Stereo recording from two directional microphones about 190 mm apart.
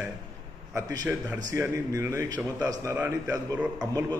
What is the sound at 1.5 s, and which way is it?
A man's voice, 15° right (ahead or behind).